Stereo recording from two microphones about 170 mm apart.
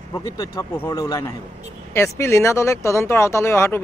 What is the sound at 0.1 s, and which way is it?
Speech, 20° left (ahead or behind).